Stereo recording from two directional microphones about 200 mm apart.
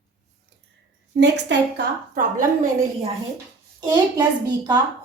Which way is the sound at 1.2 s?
60° right (ahead or behind).